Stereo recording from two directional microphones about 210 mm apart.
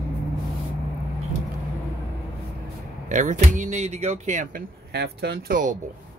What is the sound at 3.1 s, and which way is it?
Speech, 35° right (ahead or behind).